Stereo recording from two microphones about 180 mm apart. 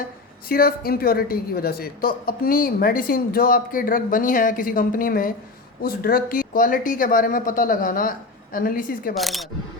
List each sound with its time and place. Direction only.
0.4 s speech: 55° left (ahead or behind)
9.1 s speech: centre (ahead or behind)